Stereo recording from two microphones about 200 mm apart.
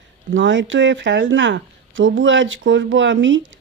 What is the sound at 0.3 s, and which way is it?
Speech, 65° right (ahead or behind).